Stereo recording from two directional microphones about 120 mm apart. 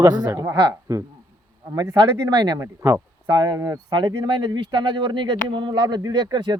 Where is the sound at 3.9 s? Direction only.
40° right (ahead or behind).